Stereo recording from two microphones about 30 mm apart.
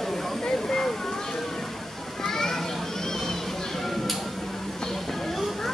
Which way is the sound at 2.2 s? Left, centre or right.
Centre.